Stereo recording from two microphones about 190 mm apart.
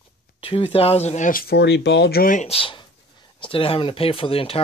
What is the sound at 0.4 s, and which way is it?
Speech, 30° left (ahead or behind).